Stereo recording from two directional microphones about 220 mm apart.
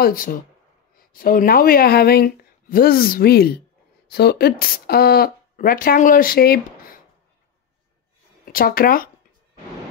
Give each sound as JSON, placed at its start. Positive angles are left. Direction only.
{"t": 0.0, "sound": "speech", "side_deg": 40}
{"t": 8.5, "sound": "speech", "side_deg": 40}